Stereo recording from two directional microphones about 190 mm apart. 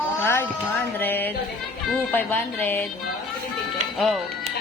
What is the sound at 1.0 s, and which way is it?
Speech, 10° left (ahead or behind).